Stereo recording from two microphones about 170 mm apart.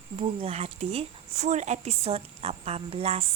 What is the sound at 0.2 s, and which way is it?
Speech, 35° right (ahead or behind).